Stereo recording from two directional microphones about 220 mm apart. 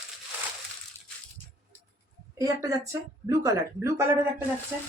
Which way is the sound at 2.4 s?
15° right (ahead or behind).